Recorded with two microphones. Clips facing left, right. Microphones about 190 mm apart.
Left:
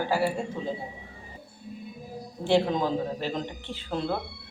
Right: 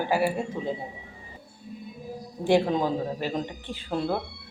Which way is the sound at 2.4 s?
10° right (ahead or behind).